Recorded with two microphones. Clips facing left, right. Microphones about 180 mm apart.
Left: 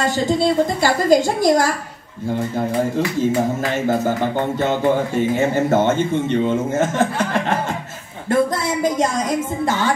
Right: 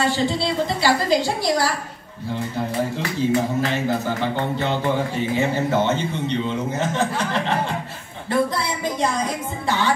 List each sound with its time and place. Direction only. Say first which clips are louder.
0.0 s speech: left 3 dB; 45° left (ahead or behind)
3.7 s speech: left 4 dB; 45° left (ahead or behind)
9.7 s speech: even; 45° left (ahead or behind)